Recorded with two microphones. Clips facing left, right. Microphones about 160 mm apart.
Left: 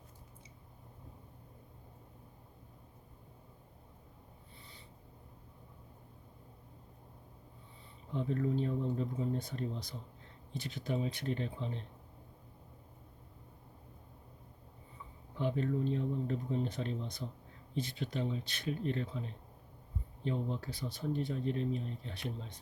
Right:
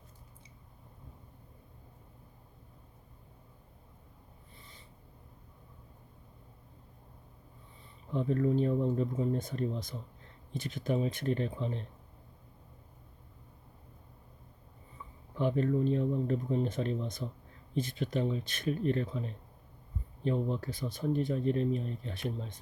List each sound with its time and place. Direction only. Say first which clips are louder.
8.1 s speech: right 5 dB; 50° right (ahead or behind)
15.4 s speech: right 5 dB; 50° right (ahead or behind)